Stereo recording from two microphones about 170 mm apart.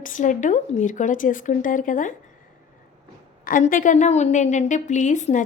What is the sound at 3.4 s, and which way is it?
A woman's voice, 55° left (ahead or behind).